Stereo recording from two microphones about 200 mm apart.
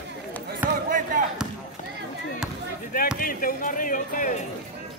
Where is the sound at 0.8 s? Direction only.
40° right (ahead or behind).